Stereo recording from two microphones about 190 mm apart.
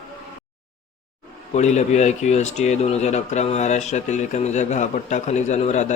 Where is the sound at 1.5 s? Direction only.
35° left (ahead or behind).